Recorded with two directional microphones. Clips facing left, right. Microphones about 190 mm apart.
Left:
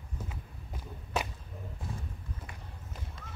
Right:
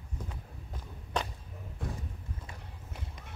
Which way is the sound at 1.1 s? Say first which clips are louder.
Even; 5° left (ahead or behind).